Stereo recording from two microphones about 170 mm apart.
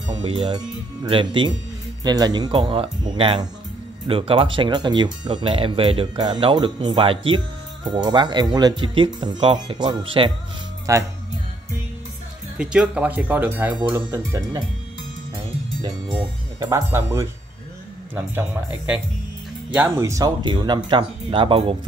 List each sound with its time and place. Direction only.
0.0 s speech: 30° right (ahead or behind)
10.9 s speech: 20° right (ahead or behind)
12.5 s speech: 5° right (ahead or behind)
15.8 s speech: 20° right (ahead or behind)